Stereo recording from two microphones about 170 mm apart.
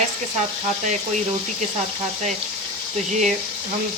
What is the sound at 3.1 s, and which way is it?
Sizzle, 45° right (ahead or behind).